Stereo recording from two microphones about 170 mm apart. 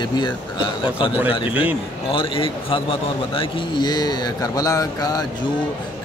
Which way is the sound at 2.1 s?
30° left (ahead or behind).